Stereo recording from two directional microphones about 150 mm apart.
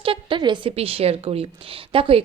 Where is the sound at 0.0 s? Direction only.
35° right (ahead or behind).